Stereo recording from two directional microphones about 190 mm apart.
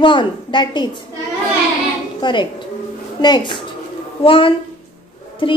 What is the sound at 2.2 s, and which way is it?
A woman's voice, 25° left (ahead or behind).